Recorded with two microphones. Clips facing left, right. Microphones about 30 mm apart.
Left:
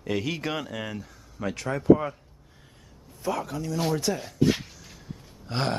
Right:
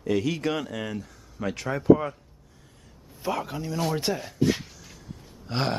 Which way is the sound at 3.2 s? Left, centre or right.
Centre.